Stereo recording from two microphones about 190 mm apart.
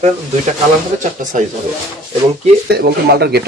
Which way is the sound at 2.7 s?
55° right (ahead or behind).